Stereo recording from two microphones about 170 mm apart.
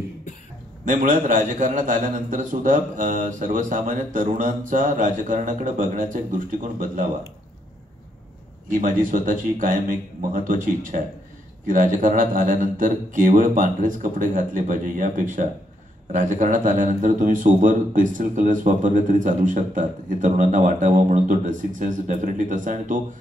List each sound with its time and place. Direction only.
0.8 s a man's voice: 50° right (ahead or behind)
8.6 s a man's voice: 50° right (ahead or behind)